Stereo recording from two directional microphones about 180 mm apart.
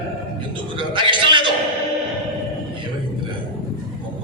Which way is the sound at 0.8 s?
25° right (ahead or behind).